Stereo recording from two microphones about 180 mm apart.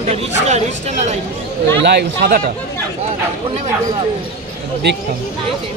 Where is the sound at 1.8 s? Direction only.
65° right (ahead or behind).